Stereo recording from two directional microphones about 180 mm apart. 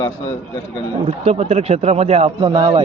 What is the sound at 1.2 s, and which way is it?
A man's voice, 35° right (ahead or behind).